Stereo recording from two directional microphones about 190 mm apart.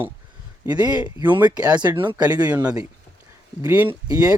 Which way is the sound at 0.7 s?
20° right (ahead or behind).